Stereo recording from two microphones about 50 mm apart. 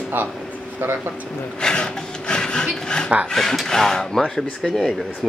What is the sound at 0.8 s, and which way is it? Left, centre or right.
Speech, right.